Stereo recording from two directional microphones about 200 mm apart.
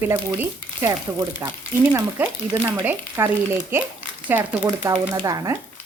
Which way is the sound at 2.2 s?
10° right (ahead or behind).